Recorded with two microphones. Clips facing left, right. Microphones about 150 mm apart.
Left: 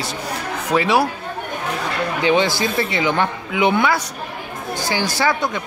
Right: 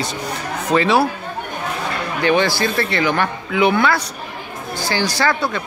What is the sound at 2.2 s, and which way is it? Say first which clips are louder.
Speech: right 1 dB; 20° left (ahead or behind).